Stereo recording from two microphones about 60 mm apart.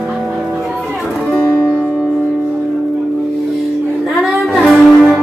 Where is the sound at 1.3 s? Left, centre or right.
Left.